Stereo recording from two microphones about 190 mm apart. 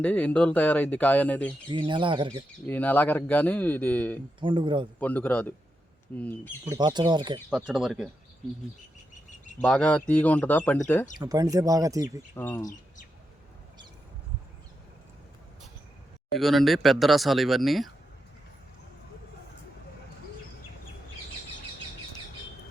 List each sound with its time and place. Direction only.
0.0 s speech: 5° left (ahead or behind)
1.7 s speech: 25° right (ahead or behind)
2.6 s speech: 10° left (ahead or behind)
4.4 s speech: 25° right (ahead or behind)
4.9 s speech: 10° left (ahead or behind)
6.7 s speech: 20° right (ahead or behind)
7.5 s speech: 5° right (ahead or behind)
9.6 s speech: 5° left (ahead or behind)
11.2 s speech: 20° right (ahead or behind)
12.3 s speech: 10° left (ahead or behind)
16.4 s speech: centre (ahead or behind)